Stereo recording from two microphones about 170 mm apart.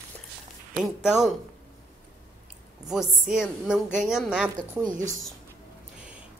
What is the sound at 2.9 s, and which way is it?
A woman's voice, 5° right (ahead or behind).